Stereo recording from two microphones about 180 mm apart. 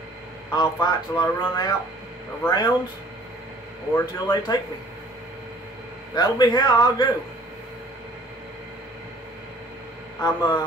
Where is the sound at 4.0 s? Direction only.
20° left (ahead or behind).